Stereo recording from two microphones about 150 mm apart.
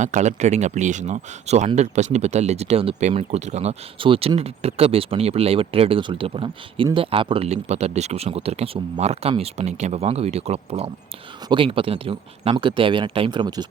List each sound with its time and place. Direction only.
0.0 s speech: 55° right (ahead or behind); by 13.7 s 30° right (ahead or behind)